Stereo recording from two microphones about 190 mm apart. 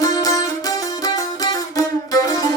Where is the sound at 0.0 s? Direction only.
20° left (ahead or behind).